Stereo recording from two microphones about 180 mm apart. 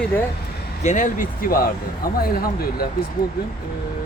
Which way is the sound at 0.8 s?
45° left (ahead or behind).